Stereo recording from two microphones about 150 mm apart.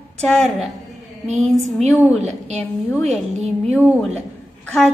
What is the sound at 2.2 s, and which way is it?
Speech, 50° right (ahead or behind).